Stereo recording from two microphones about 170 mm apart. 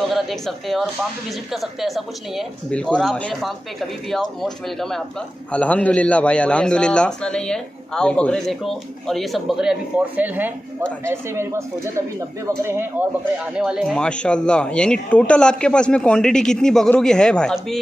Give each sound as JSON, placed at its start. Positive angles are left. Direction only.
{"t": 0.1, "sound": "a man's voice", "side_deg": 0}